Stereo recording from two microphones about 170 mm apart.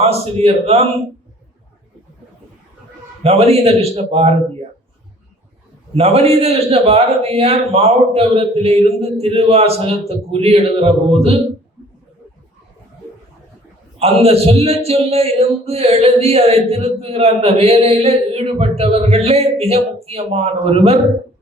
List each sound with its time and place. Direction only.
0.0 s a man's voice: 35° right (ahead or behind)
3.2 s a man's voice: 35° right (ahead or behind)
6.0 s a man's voice: 35° right (ahead or behind)
14.0 s a man's voice: 35° right (ahead or behind)